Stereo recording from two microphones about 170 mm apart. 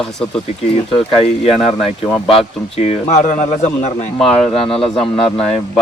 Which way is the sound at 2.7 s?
35° left (ahead or behind).